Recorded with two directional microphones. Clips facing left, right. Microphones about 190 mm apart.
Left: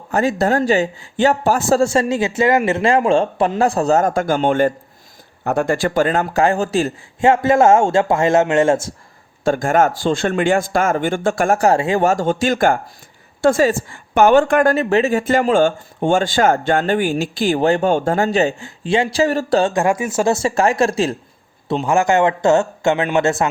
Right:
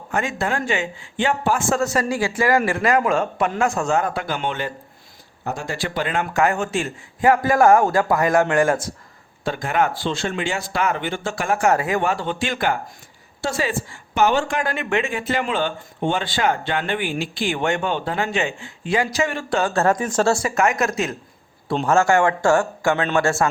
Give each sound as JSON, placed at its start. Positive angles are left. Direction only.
{"t": 0.1, "sound": "a woman's voice", "side_deg": 35}
{"t": 9.4, "sound": "a woman's voice", "side_deg": 45}
{"t": 12.0, "sound": "a woman's voice", "side_deg": 45}
{"t": 19.7, "sound": "speech", "side_deg": 15}
{"t": 20.3, "sound": "speech", "side_deg": 30}
{"t": 21.8, "sound": "a man's voice", "side_deg": 15}